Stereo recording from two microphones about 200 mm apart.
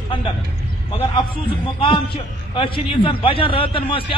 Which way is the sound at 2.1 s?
25° left (ahead or behind).